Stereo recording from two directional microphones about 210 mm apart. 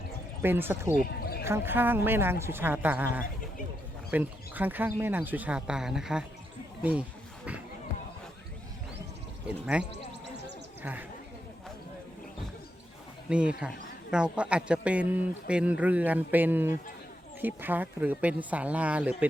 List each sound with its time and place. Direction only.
0.4 s speech: 10° right (ahead or behind)
0.9 s basketball bounce: 45° left (ahead or behind)
1.5 s speech: 10° right (ahead or behind)
9.5 s speech: 5° right (ahead or behind)
13.3 s a man's voice: 5° right (ahead or behind)